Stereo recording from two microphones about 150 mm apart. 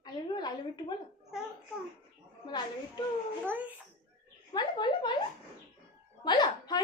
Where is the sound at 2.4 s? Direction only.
30° left (ahead or behind).